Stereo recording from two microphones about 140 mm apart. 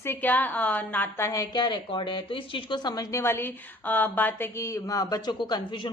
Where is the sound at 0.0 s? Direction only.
15° left (ahead or behind).